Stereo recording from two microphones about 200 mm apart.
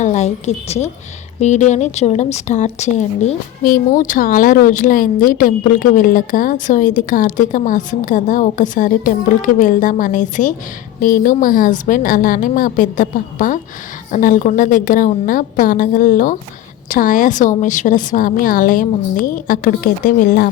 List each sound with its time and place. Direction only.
0.0 s a woman's voice: 35° left (ahead or behind)